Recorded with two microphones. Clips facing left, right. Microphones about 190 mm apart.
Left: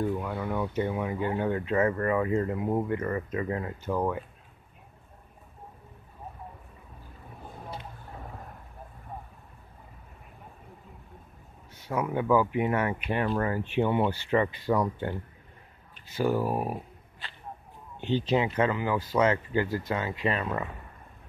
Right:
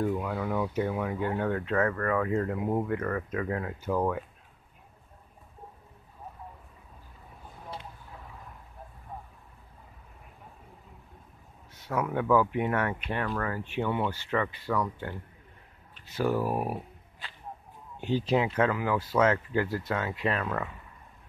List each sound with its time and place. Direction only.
0.0 s speech: 5° right (ahead or behind)
11.7 s speech: centre (ahead or behind)
13.2 s speech: 25° left (ahead or behind)
16.2 s speech: centre (ahead or behind)